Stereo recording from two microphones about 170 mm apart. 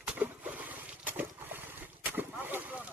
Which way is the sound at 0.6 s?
10° right (ahead or behind).